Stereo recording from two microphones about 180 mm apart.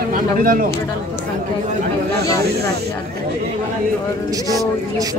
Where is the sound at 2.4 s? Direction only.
60° right (ahead or behind).